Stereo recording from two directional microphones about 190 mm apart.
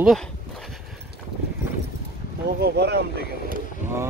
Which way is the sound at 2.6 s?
60° right (ahead or behind).